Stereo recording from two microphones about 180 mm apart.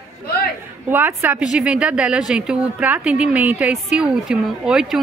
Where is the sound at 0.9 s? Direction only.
10° right (ahead or behind).